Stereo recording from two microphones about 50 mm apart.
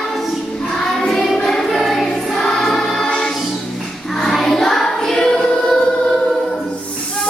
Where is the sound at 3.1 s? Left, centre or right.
Centre.